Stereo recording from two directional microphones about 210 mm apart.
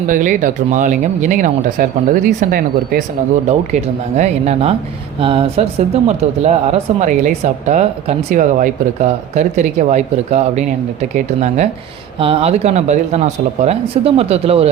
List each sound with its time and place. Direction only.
0.1 s speech: 40° right (ahead or behind)
3.7 s speech: 30° right (ahead or behind)